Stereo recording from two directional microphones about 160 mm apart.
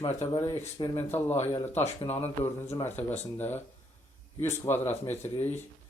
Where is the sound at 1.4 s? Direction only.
45° left (ahead or behind).